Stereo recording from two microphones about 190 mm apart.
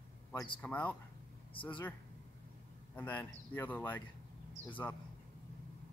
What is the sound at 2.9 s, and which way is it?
Speech, 10° left (ahead or behind).